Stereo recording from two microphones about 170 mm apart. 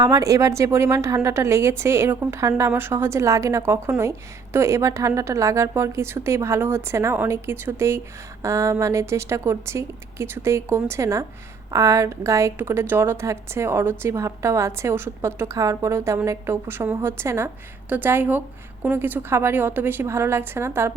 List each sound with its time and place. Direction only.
0.0 s a woman's voice: 20° right (ahead or behind)